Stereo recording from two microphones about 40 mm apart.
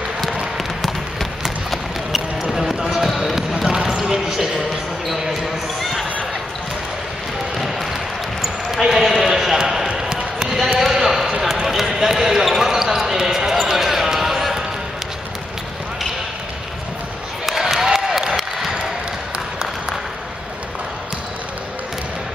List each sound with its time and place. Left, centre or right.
1.4 s run: centre
3.1 s basketball bounce: centre
3.3 s basketball bounce: centre
8.9 s a sound: centre
9.9 s basketball bounce: centre
10.8 s basketball bounce: centre
17.5 s a sound: centre